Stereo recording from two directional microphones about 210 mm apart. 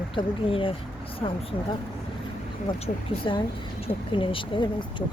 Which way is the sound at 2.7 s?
25° left (ahead or behind).